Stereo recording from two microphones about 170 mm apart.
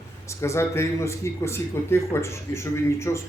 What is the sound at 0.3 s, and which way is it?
Speech, 15° left (ahead or behind).